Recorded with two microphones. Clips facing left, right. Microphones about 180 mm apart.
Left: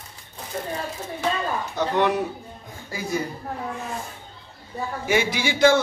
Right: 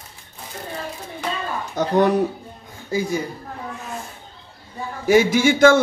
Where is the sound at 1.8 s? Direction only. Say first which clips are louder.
Right 5 dB; 40° right (ahead or behind).